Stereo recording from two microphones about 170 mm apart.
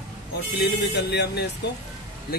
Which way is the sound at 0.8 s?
80° left.